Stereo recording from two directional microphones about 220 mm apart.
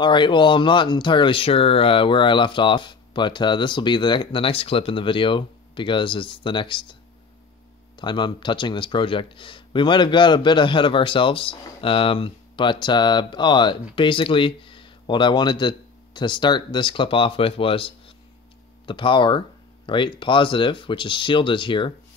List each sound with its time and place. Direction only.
0.0 s speech: 20° left (ahead or behind)
8.0 s speech: 20° left (ahead or behind)